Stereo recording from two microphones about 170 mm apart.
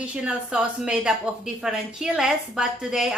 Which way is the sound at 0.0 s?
5° right (ahead or behind).